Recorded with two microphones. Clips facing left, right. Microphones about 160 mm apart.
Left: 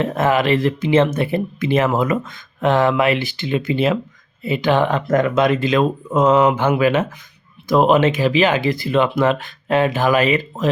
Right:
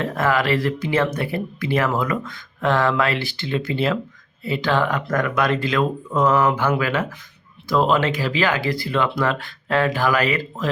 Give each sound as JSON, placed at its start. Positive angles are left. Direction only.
{"t": 0.0, "sound": "speech", "side_deg": 20}